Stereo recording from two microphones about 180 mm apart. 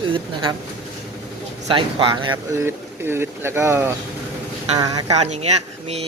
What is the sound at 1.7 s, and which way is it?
Speech, 25° right (ahead or behind).